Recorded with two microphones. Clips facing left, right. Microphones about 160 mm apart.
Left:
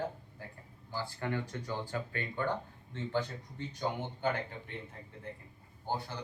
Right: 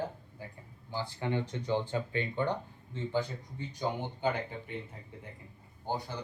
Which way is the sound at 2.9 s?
10° right (ahead or behind).